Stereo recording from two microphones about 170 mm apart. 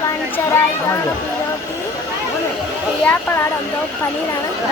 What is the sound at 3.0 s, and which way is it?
Speech, 10° left (ahead or behind).